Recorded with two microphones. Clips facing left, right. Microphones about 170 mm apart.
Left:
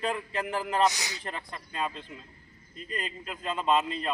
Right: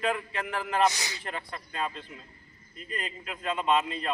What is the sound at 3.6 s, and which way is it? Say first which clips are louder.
Speech: even; centre (ahead or behind).